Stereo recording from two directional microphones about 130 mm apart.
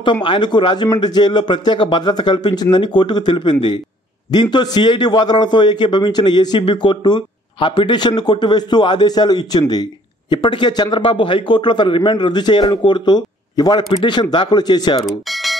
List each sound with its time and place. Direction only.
0.0 s a man's voice: 40° left (ahead or behind)
15.3 s alarm: centre (ahead or behind)